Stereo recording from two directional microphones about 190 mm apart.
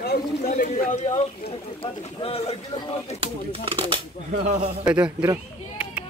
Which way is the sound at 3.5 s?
30° right (ahead or behind).